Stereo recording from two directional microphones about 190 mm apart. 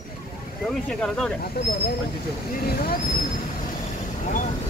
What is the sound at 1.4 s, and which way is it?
Speech, 55° left (ahead or behind).